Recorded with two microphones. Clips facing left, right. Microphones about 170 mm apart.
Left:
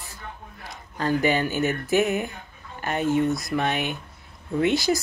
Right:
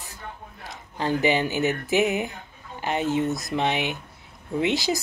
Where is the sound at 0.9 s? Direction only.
15° right (ahead or behind).